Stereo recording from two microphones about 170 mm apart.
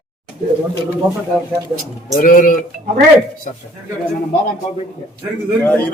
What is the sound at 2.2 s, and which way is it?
Speech, 50° left (ahead or behind).